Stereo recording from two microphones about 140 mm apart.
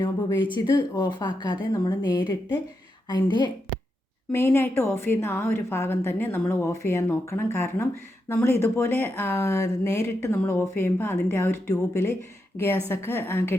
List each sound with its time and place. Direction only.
0.0 s speech: 35° left (ahead or behind)
4.3 s speech: 15° left (ahead or behind)
6.5 s a sound: 20° left (ahead or behind)
6.8 s speech: 20° left (ahead or behind)
9.2 s a sound: 20° left (ahead or behind)
10.2 s speech: 15° left (ahead or behind)